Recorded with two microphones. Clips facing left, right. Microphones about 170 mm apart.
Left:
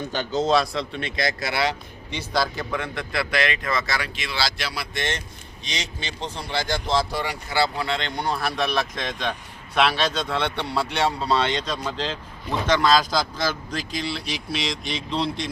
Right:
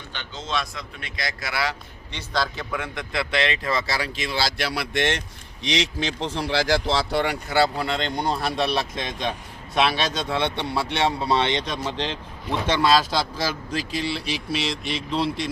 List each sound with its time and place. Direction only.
0.1 s a man's voice: 40° left (ahead or behind)
2.1 s speech: 5° left (ahead or behind)
2.7 s speech: 10° right (ahead or behind); by 5.2 s 70° right (ahead or behind)
5.6 s speech: 85° right; by 7.3 s 60° right (ahead or behind)
7.8 s speech: 40° right (ahead or behind)
8.4 s speech: 25° right (ahead or behind)
12.9 s speech: 5° right (ahead or behind)